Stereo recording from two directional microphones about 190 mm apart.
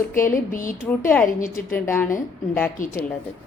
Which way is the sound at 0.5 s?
45° left (ahead or behind).